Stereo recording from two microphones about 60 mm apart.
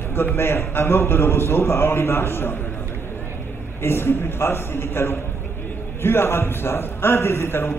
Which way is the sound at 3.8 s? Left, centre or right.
Left.